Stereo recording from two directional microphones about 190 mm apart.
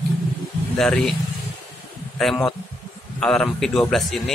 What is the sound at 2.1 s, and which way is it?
A man's voice, centre (ahead or behind).